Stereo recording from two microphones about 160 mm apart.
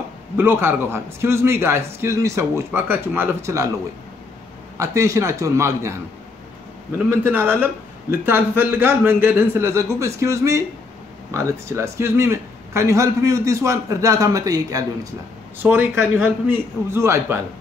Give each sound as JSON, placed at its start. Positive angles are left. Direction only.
{"t": 0.4, "sound": "speech", "side_deg": -15}
{"t": 4.7, "sound": "a man's voice", "side_deg": -20}
{"t": 7.1, "sound": "a man's voice", "side_deg": -15}